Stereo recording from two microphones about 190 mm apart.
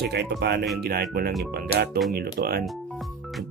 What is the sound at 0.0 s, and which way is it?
Speech, 60° right (ahead or behind).